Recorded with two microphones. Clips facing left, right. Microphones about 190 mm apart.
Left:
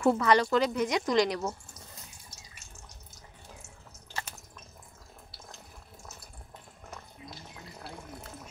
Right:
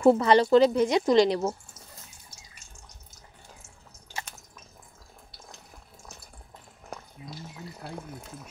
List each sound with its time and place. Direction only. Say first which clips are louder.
0.0 s a woman's voice: right 5 dB; 30° right (ahead or behind)